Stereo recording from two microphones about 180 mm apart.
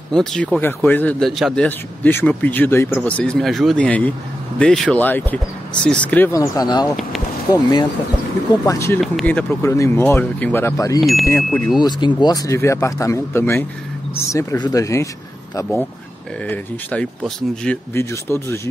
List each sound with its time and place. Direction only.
0.1 s speech: 5° left (ahead or behind); by 6.9 s 20° left (ahead or behind)
8.6 s speech: 15° left (ahead or behind)
9.0 s speech: 5° left (ahead or behind)
11.0 s speech: centre (ahead or behind)
11.2 s speech: 15° left (ahead or behind)
16.4 s speech: 5° left (ahead or behind)